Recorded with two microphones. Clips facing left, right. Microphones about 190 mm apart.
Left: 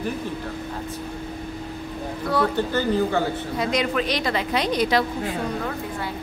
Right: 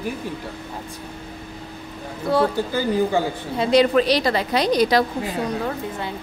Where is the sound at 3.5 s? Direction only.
30° right (ahead or behind).